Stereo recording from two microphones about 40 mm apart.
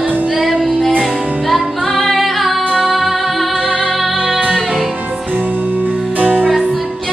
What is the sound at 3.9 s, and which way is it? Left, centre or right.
Music, centre.